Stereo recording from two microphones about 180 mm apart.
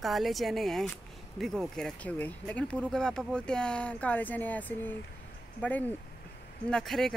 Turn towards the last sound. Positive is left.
turn(degrees=0)  # may be behind; listen again after turning